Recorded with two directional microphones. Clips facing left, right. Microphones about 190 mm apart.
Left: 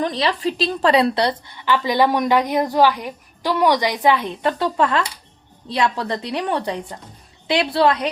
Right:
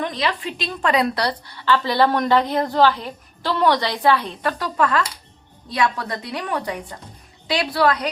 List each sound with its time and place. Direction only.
0.0 s a woman's voice: 35° left (ahead or behind)